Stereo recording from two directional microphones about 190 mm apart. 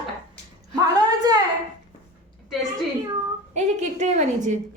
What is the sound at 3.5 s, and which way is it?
A woman's voice, 40° right (ahead or behind).